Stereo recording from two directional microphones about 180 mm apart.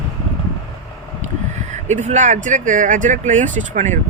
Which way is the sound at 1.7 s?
40° right (ahead or behind).